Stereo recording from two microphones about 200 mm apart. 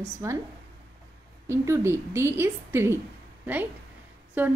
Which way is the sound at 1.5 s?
15° right (ahead or behind).